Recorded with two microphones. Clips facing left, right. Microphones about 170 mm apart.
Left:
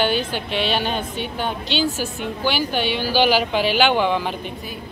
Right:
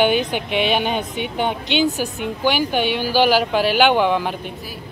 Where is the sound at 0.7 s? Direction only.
15° right (ahead or behind).